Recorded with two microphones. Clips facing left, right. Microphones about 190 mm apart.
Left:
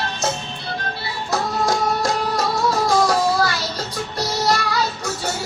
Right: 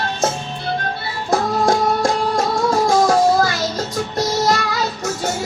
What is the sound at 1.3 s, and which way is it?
Music, 50° right (ahead or behind).